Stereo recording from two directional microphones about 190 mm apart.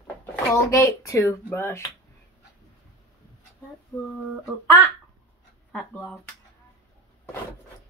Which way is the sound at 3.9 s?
10° left (ahead or behind).